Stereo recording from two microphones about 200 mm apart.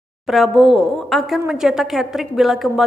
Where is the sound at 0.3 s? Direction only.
Centre (ahead or behind).